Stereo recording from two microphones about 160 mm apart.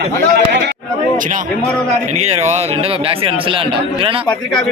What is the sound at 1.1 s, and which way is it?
Speech, 55° right (ahead or behind).